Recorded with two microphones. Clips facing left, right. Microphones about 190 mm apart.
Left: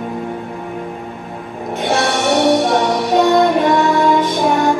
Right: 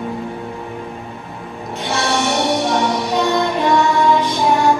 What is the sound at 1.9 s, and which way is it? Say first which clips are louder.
Music: left 3 dB; 55° left (ahead or behind).